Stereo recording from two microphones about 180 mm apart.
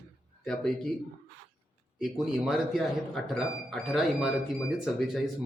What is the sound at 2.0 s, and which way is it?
Speech, centre (ahead or behind).